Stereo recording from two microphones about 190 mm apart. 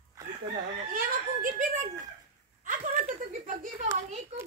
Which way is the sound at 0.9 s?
45° right (ahead or behind).